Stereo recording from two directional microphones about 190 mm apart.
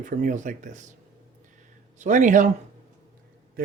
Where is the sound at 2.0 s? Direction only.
40° right (ahead or behind).